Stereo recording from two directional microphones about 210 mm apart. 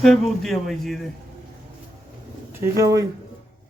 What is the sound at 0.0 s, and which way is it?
A man's voice, centre (ahead or behind).